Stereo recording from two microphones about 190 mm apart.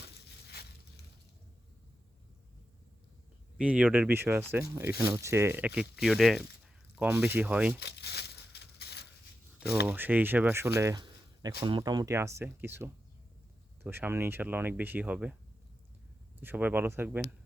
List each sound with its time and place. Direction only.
0.4 s crushing: 60° left (ahead or behind)
3.6 s speech: 5° right (ahead or behind)
7.8 s crumpling: 60° left (ahead or behind)
9.8 s speech: 10° right (ahead or behind)
10.8 s a sound: 20° right (ahead or behind)
11.6 s speech: 25° right (ahead or behind); by 15.4 s 5° right (ahead or behind)
16.4 s speech: 10° right (ahead or behind)